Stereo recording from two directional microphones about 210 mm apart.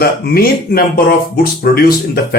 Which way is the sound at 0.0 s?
45° left (ahead or behind).